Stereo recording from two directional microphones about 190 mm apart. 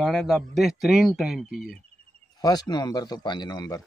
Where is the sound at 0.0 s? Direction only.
Centre (ahead or behind).